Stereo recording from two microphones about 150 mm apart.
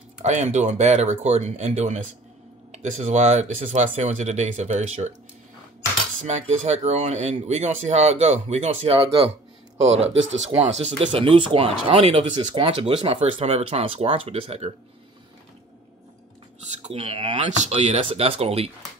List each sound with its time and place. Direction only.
0.2 s speech: 50° right (ahead or behind)
6.2 s speech: 50° right (ahead or behind)
16.8 s speech: 40° right (ahead or behind)